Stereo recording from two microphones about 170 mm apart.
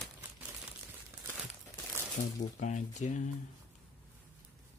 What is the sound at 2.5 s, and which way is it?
Speech, 45° left (ahead or behind).